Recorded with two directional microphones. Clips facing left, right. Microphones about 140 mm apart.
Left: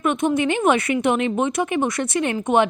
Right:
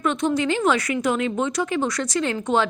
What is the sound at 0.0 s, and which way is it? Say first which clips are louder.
Speech: left 2 dB; 15° left (ahead or behind).